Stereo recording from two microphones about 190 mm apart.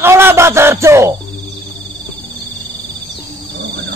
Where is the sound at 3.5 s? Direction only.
70° right (ahead or behind).